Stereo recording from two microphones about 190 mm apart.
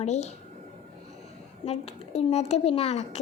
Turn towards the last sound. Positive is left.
turn(degrees=35)  # may be behind; listen again after turning